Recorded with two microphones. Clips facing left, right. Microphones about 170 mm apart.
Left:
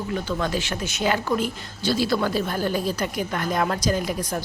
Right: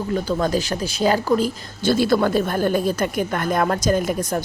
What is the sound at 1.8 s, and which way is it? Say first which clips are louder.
Speech: right 5 dB; 50° right (ahead or behind).